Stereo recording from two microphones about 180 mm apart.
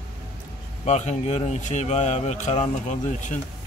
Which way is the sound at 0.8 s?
40° left (ahead or behind).